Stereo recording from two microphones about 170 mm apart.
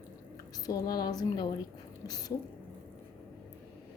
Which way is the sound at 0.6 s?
20° left (ahead or behind).